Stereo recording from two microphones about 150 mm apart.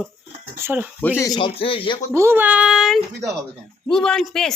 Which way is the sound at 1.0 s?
15° left (ahead or behind).